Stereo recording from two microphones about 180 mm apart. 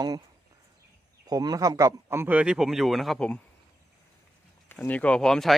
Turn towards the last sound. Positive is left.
turn(degrees=0)  # may be behind; listen again after turning